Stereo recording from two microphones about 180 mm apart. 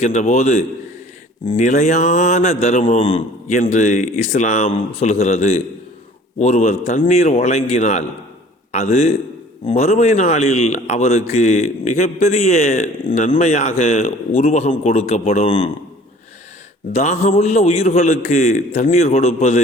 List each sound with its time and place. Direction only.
0.0 s a man's voice: 40° left (ahead or behind)
16.9 s a man's voice: 40° left (ahead or behind)